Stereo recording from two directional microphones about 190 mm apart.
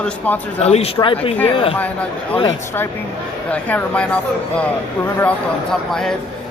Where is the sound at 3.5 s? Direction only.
5° left (ahead or behind).